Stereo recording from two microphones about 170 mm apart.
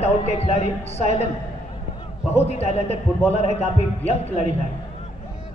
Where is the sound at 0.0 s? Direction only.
35° left (ahead or behind).